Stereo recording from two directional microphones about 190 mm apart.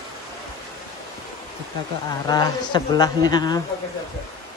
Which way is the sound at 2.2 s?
20° left (ahead or behind).